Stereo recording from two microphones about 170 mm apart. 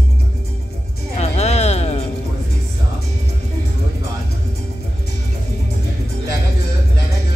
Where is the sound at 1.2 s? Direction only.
40° left (ahead or behind).